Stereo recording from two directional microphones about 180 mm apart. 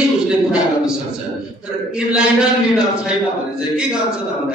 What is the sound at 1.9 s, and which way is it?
Speech, 5° right (ahead or behind).